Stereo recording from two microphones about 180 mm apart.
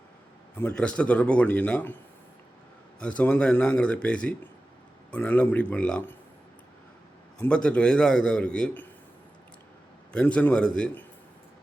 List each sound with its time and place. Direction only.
0.6 s a man's voice: 5° left (ahead or behind)
3.0 s a man's voice: 5° left (ahead or behind)
7.3 s a man's voice: 5° left (ahead or behind)
10.1 s a man's voice: 5° left (ahead or behind)